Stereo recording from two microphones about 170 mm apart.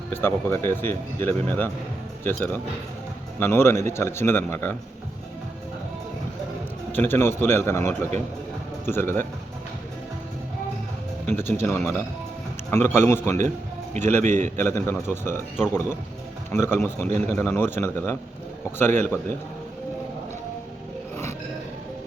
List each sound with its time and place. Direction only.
0.1 s a man's voice: 10° left (ahead or behind)
3.4 s a man's voice: 15° left (ahead or behind)
6.9 s a man's voice: 10° left (ahead or behind)
11.3 s a man's voice: 10° left (ahead or behind)
13.9 s a man's voice: 45° right (ahead or behind)
14.5 s a man's voice: 15° left (ahead or behind)